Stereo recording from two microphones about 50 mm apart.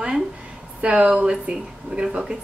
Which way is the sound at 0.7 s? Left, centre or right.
Right.